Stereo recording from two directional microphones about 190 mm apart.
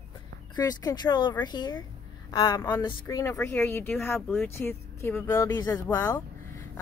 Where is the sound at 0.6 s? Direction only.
20° left (ahead or behind).